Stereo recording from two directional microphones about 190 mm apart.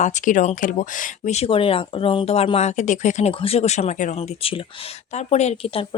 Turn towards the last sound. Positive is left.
turn(degrees=30)  # may be behind; listen again after turning